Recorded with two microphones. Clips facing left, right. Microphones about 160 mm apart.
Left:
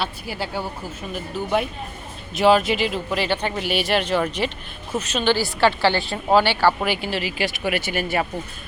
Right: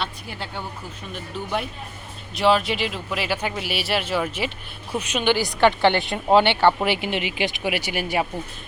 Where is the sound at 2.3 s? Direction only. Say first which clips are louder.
Left 3 dB; centre (ahead or behind).